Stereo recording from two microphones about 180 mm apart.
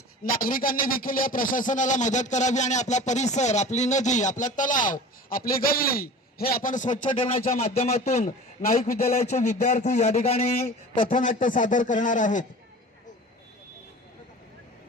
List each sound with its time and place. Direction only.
0.3 s a man's voice: 50° left (ahead or behind)
7.2 s speech: 35° left (ahead or behind)
11.0 s a man's voice: 45° left (ahead or behind)